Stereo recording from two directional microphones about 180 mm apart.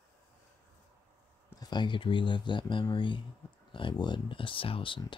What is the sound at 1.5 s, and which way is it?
Speech, 20° left (ahead or behind).